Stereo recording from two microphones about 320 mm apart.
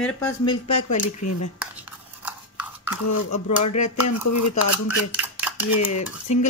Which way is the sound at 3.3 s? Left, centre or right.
Left.